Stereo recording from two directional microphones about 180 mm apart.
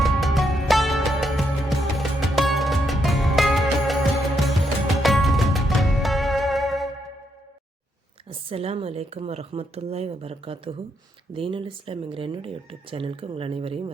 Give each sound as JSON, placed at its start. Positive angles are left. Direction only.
{"t": 0.0, "sound": "music", "side_deg": 0}
{"t": 8.3, "sound": "speech", "side_deg": -30}